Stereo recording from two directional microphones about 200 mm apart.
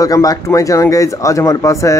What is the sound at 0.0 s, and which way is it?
Speech, 15° left (ahead or behind).